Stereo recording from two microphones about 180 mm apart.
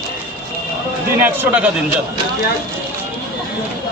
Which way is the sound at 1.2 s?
10° right (ahead or behind).